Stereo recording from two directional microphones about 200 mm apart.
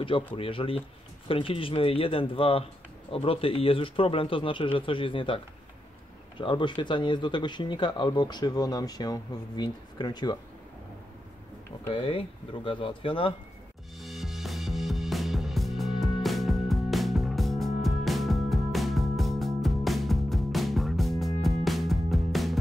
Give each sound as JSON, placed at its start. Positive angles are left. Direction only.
{"t": 0.4, "sound": "speech", "side_deg": 25}
{"t": 11.9, "sound": "speech", "side_deg": 25}
{"t": 13.9, "sound": "music", "side_deg": 0}